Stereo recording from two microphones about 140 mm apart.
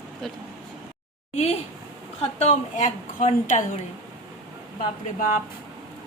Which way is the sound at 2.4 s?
60° left (ahead or behind).